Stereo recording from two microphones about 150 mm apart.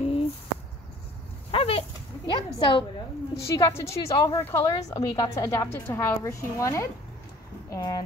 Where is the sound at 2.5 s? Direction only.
35° left (ahead or behind).